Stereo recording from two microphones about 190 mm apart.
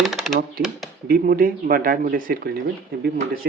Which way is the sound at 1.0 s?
50° right (ahead or behind).